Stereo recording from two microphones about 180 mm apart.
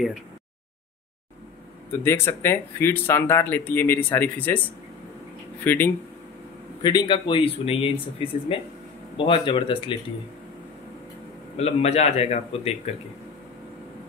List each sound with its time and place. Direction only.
1.9 s speech: 15° left (ahead or behind)
6.8 s speech: 25° left (ahead or behind)
11.5 s speech: 35° left (ahead or behind)